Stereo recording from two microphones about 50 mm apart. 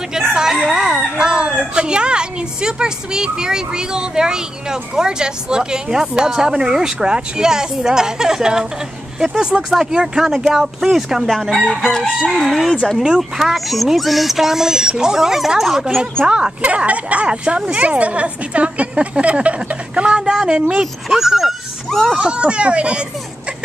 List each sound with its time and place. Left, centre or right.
0.3 s a sound: centre
1.1 s a woman's voice: centre
9.7 s a woman's voice: centre
16.2 s a woman's voice: centre
21.8 s speech: centre
22.1 s speech: centre